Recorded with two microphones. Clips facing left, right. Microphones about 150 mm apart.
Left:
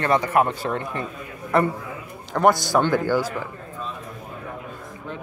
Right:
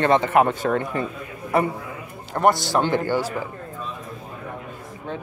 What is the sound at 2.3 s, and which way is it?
Speech, 25° right (ahead or behind).